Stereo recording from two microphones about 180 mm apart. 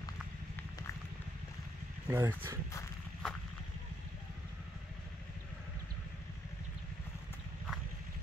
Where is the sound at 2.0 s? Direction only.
15° right (ahead or behind).